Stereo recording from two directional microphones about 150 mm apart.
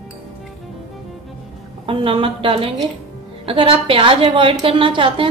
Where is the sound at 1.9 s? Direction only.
35° right (ahead or behind).